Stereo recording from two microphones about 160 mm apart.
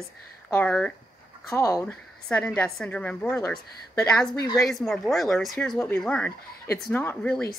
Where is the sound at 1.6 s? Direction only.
20° left (ahead or behind).